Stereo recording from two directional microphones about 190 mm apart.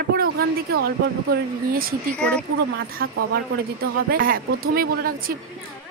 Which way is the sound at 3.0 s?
55° right (ahead or behind).